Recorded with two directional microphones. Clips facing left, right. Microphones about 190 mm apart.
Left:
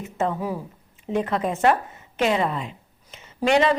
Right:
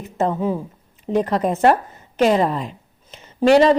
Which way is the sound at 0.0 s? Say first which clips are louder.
Right 4 dB; 35° right (ahead or behind).